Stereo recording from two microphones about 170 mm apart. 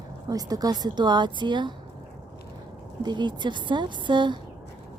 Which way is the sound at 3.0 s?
25° right (ahead or behind).